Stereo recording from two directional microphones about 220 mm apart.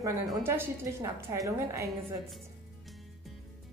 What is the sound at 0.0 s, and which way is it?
A woman's voice, 15° right (ahead or behind).